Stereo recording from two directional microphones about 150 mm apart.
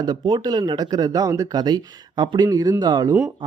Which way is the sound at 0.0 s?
30° right (ahead or behind).